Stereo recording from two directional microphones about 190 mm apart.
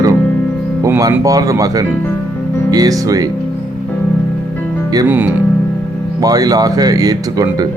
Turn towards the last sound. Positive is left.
turn(degrees=-20)  # may be behind; listen again after turning